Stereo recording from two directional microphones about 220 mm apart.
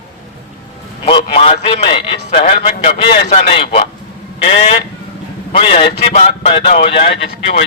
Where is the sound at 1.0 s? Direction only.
25° left (ahead or behind).